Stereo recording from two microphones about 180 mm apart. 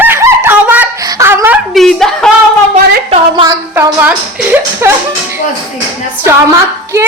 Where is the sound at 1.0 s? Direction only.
15° right (ahead or behind).